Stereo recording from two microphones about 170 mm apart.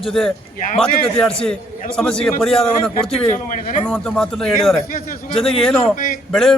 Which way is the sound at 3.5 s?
45° left (ahead or behind).